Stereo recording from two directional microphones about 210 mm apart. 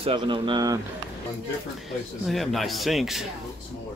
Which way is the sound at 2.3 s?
Centre (ahead or behind).